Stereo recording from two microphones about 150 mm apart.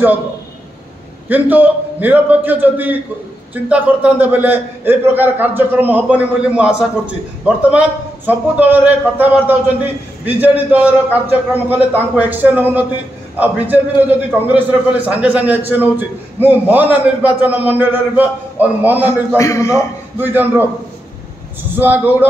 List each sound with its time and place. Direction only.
1.3 s a man's voice: 10° right (ahead or behind)
19.3 s a man's voice: 20° left (ahead or behind)
20.2 s a man's voice: 15° right (ahead or behind)
21.7 s a man's voice: 15° right (ahead or behind)